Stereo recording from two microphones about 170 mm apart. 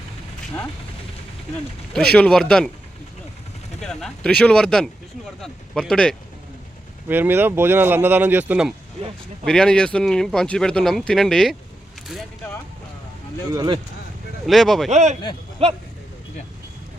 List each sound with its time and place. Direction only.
2.1 s speech: 5° left (ahead or behind)
3.8 s speech: centre (ahead or behind)
7.1 s speech: 10° right (ahead or behind)
9.4 s speech: 5° left (ahead or behind)
13.5 s speech: 25° right (ahead or behind)
14.4 s speech: centre (ahead or behind)
14.8 s speech: 40° right (ahead or behind)